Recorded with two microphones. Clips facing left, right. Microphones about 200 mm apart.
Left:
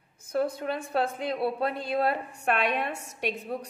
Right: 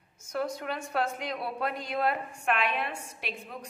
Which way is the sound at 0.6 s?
30° left (ahead or behind).